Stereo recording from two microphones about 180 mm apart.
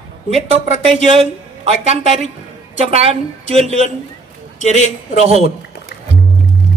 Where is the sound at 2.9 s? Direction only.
35° right (ahead or behind).